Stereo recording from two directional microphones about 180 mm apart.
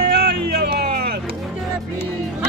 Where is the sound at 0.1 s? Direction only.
55° right (ahead or behind).